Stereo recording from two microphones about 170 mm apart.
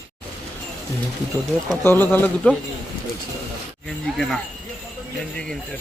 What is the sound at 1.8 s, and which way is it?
Speech, 15° left (ahead or behind).